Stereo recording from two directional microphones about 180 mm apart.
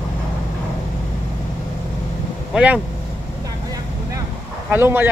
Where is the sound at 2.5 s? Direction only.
5° right (ahead or behind).